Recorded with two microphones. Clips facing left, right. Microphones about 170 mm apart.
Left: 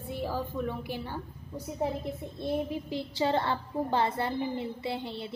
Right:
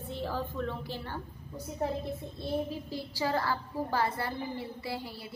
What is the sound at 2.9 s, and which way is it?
A woman's voice, 25° left (ahead or behind).